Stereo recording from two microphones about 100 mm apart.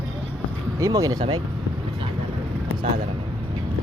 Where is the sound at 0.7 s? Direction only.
35° right (ahead or behind).